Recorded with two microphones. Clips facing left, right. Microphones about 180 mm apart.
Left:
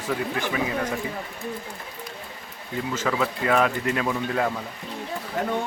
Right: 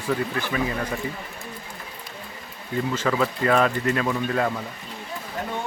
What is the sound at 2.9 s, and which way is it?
Speech, 5° left (ahead or behind).